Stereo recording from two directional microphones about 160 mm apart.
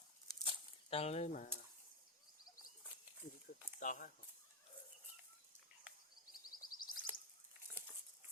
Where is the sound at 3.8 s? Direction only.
55° left (ahead or behind).